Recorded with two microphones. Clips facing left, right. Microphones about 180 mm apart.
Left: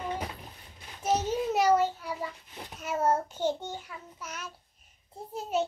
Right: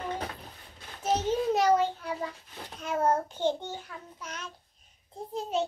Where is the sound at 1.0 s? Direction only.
10° left (ahead or behind).